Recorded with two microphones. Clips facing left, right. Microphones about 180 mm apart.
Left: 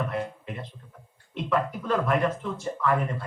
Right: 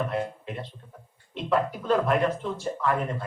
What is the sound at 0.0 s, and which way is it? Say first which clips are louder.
Speech: right 1 dB; 30° right (ahead or behind).